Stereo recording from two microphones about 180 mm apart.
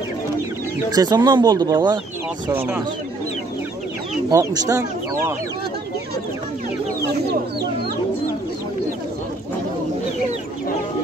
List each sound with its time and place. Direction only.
0.7 s speech: 20° right (ahead or behind)
4.3 s speech: 20° right (ahead or behind)